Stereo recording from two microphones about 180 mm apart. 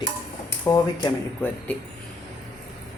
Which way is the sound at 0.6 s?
20° left (ahead or behind).